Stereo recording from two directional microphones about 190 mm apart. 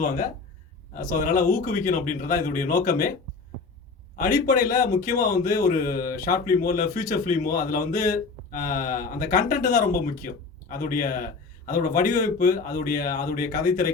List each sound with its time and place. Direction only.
0.9 s speech: 45° left (ahead or behind)
4.2 s speech: 45° left (ahead or behind)